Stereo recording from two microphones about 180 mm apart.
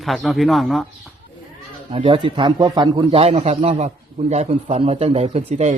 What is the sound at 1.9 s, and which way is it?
A man's voice, 30° right (ahead or behind).